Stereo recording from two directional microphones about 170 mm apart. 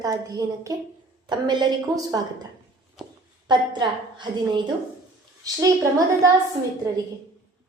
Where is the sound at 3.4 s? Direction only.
25° right (ahead or behind).